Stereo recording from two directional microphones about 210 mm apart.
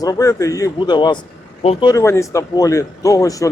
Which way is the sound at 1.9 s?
15° left (ahead or behind).